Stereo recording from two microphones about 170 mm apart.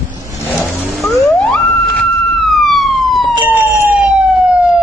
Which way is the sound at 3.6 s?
10° right (ahead or behind).